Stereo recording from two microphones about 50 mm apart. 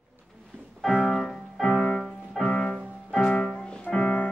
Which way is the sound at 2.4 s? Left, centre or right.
Centre.